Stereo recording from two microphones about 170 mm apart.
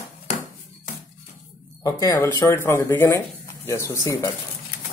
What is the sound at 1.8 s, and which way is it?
Speech, 20° left (ahead or behind).